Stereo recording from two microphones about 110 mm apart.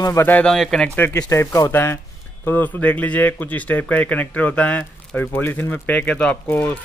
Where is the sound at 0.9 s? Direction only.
20° left (ahead or behind).